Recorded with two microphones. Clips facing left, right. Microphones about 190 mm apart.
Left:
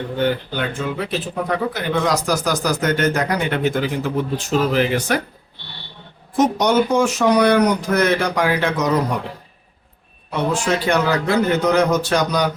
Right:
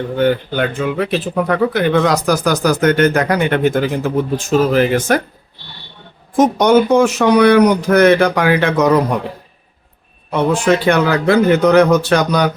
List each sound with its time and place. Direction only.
0.2 s speech: 60° right (ahead or behind)
6.3 s speech: 50° right (ahead or behind)
10.3 s speech: 60° right (ahead or behind)